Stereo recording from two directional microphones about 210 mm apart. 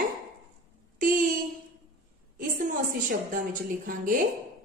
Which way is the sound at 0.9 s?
40° right (ahead or behind).